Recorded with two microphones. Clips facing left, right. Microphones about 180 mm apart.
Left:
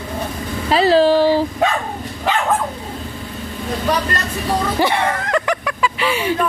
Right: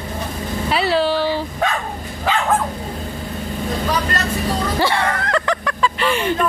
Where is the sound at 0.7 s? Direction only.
40° left (ahead or behind).